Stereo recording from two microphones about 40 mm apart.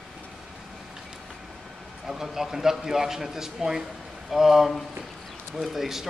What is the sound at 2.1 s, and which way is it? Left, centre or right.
A man's voice, centre.